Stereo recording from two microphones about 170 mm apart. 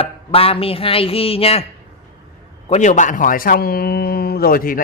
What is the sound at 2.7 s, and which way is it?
A man's voice, 45° left (ahead or behind).